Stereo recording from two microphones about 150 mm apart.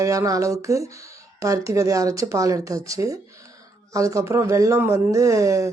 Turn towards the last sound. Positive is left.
turn(degrees=-20)  # may be behind; listen again after turning